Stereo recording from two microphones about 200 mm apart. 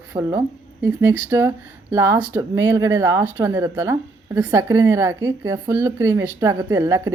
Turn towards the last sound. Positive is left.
turn(degrees=-15)  # may be behind; listen again after turning